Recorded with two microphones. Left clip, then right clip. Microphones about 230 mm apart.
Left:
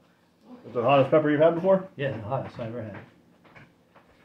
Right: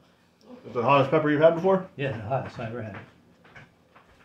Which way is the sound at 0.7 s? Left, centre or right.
Centre.